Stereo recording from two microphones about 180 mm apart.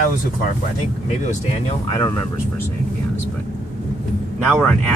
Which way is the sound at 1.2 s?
40° left (ahead or behind).